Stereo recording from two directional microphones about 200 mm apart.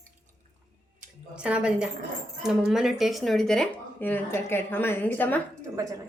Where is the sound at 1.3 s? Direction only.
5° right (ahead or behind).